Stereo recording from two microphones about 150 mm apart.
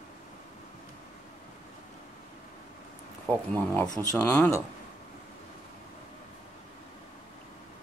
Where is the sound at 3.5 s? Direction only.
10° left (ahead or behind).